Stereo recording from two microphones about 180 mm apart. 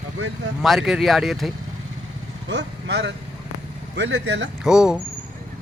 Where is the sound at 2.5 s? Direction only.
75° right (ahead or behind).